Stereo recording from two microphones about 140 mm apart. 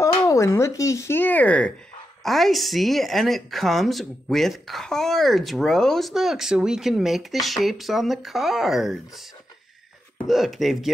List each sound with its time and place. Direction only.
0.0 s speech: 20° left (ahead or behind); by 9.2 s centre (ahead or behind)
10.2 s speech: centre (ahead or behind)